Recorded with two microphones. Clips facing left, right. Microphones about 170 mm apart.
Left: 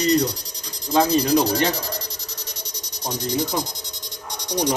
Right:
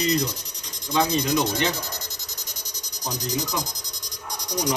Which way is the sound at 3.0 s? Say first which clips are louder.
Left 4 dB; 35° left (ahead or behind).